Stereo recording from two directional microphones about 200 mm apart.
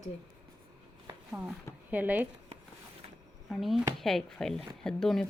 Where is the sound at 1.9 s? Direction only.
10° right (ahead or behind).